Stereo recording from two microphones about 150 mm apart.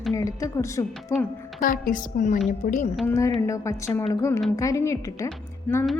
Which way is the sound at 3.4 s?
20° left (ahead or behind).